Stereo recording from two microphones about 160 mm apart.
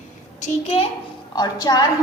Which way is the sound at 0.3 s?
40° left (ahead or behind).